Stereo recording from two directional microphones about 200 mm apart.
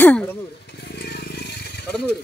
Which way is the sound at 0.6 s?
55° left (ahead or behind).